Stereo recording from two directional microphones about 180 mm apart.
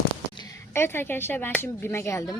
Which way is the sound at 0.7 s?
15° left (ahead or behind).